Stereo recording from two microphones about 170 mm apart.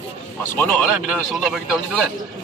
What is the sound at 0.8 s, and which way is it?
Speech, 5° right (ahead or behind).